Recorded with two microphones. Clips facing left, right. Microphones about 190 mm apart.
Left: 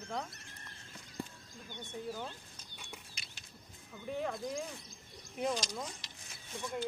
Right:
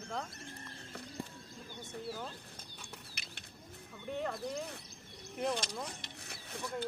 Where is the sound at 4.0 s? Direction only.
5° left (ahead or behind).